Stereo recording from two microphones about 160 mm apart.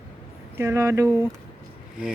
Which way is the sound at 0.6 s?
15° right (ahead or behind).